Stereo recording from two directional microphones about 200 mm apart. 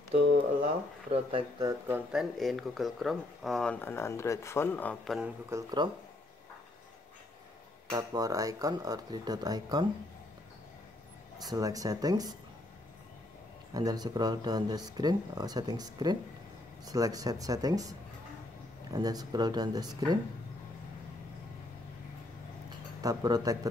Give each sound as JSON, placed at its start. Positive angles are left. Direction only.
{"t": 1.1, "sound": "speech", "side_deg": -25}
{"t": 1.9, "sound": "speech", "side_deg": 0}
{"t": 5.5, "sound": "speech", "side_deg": -15}
{"t": 7.9, "sound": "speech", "side_deg": -20}
{"t": 11.4, "sound": "speech", "side_deg": -15}
{"t": 13.7, "sound": "speech", "side_deg": -20}
{"t": 18.9, "sound": "speech", "side_deg": -20}
{"t": 23.0, "sound": "speech", "side_deg": -20}